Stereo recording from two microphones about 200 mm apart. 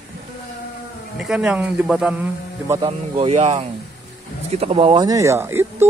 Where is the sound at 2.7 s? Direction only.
30° right (ahead or behind); by 5.6 s 10° right (ahead or behind).